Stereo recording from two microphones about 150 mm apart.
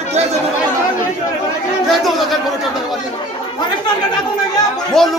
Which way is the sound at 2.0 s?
Centre (ahead or behind).